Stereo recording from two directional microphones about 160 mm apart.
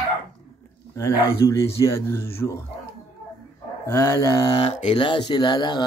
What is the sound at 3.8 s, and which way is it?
Music, 15° left (ahead or behind).